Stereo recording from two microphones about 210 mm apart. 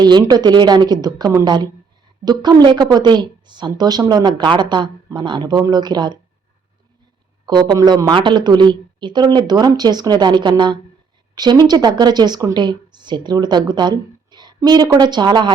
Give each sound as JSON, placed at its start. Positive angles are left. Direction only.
{"t": 0.0, "sound": "speech", "side_deg": -20}
{"t": 7.4, "sound": "speech", "side_deg": -20}